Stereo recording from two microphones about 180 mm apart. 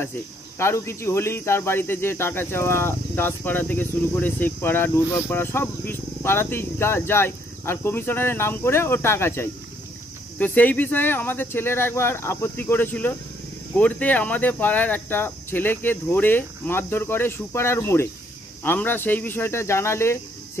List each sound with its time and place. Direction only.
0.6 s speech: 15° left (ahead or behind)